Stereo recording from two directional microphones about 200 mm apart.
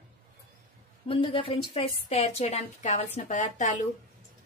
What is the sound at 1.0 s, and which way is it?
A woman's voice, 25° left (ahead or behind).